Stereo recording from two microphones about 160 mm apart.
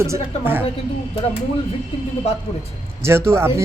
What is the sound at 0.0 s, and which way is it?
Speech, 15° right (ahead or behind).